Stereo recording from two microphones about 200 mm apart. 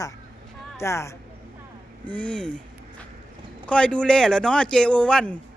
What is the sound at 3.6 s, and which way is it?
Speech, 5° left (ahead or behind).